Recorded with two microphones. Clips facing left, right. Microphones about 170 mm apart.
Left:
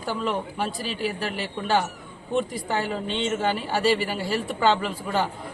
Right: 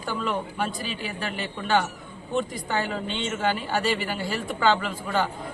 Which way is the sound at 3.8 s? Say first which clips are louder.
Left 8 dB; 35° left (ahead or behind).